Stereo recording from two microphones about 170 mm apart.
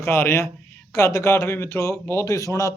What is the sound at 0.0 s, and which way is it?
A man's voice, 15° left (ahead or behind).